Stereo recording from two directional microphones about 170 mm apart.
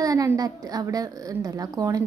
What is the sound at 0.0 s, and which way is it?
A woman's voice, 20° right (ahead or behind).